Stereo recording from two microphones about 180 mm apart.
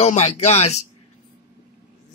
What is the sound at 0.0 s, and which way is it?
Speech, 35° left (ahead or behind).